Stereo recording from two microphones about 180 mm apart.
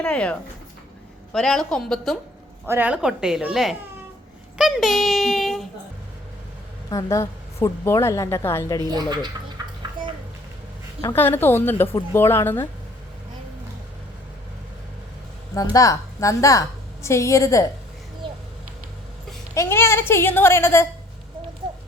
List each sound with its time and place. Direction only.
0.0 s a woman's voice: 5° left (ahead or behind)
2.6 s a woman's voice: 10° right (ahead or behind)
6.9 s a woman's voice: 15° left (ahead or behind)
8.9 s speech: 25° right (ahead or behind)
9.6 s a sound: 20° right (ahead or behind)
11.0 s a woman's voice: 10° left (ahead or behind)
15.5 s a woman's voice: 20° left (ahead or behind)
19.5 s a woman's voice: 15° left (ahead or behind)